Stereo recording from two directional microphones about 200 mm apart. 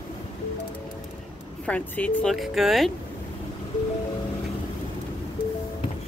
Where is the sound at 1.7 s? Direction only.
5° left (ahead or behind).